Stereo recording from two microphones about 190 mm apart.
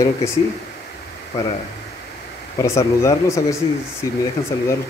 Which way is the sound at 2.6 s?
15° left (ahead or behind).